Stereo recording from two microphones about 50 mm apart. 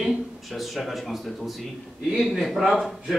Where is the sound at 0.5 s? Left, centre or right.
Centre.